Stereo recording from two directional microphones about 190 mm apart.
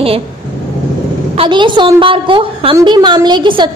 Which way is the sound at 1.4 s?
25° right (ahead or behind).